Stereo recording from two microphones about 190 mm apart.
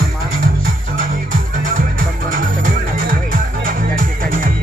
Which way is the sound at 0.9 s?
45° right (ahead or behind).